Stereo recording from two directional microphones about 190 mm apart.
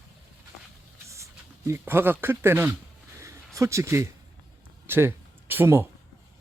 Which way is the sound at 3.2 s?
15° right (ahead or behind).